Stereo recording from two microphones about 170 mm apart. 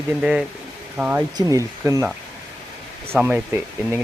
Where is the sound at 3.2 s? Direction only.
10° right (ahead or behind).